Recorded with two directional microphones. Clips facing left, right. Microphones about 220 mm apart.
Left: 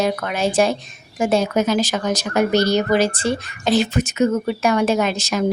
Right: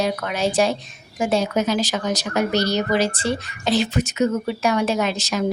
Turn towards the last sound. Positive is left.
turn(degrees=50)  # may be behind; listen again after turning